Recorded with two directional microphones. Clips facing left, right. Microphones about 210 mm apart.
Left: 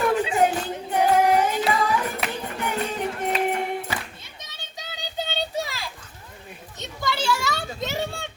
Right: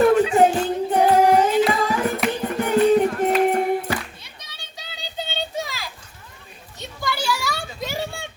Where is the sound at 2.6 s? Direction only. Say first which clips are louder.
Right 12 dB; 40° right (ahead or behind).